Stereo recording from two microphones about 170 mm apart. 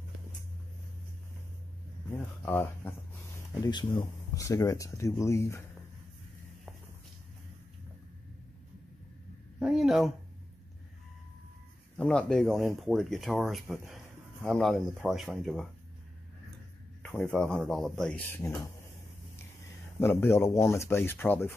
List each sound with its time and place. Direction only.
2.0 s speech: 10° left (ahead or behind)
3.6 s speech: 25° left (ahead or behind)
9.6 s a sound: centre (ahead or behind)
12.0 s speech: 5° left (ahead or behind)
17.0 s speech: 5° left (ahead or behind)
20.0 s speech: 15° left (ahead or behind)